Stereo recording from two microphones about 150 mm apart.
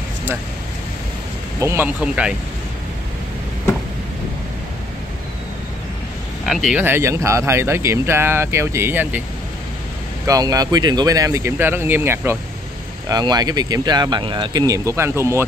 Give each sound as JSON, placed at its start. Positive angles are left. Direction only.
{"t": 1.6, "sound": "speech", "side_deg": -15}
{"t": 2.0, "sound": "speech", "side_deg": -5}
{"t": 6.4, "sound": "speech", "side_deg": 0}
{"t": 6.8, "sound": "speech", "side_deg": -15}
{"t": 10.2, "sound": "speech", "side_deg": -25}
{"t": 13.1, "sound": "speech", "side_deg": -25}